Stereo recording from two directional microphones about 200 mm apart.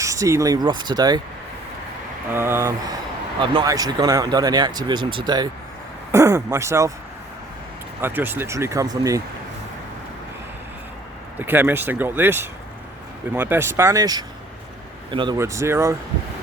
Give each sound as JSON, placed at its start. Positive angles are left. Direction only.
{"t": 0.0, "sound": "speech", "side_deg": -15}
{"t": 2.3, "sound": "speech", "side_deg": -10}
{"t": 8.0, "sound": "speech", "side_deg": -10}
{"t": 11.3, "sound": "speech", "side_deg": -10}